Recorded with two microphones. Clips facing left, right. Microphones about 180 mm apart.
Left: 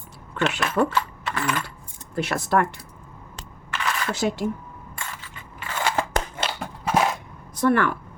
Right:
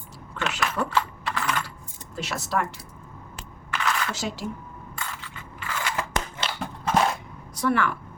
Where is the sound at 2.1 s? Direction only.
55° left (ahead or behind).